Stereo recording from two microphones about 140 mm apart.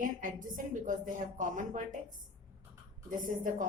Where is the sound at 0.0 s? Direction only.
70° right (ahead or behind).